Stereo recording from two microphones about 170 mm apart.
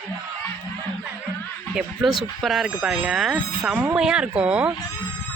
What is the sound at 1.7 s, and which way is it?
Speech, centre (ahead or behind).